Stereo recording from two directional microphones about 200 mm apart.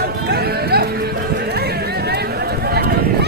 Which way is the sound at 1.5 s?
55° right (ahead or behind).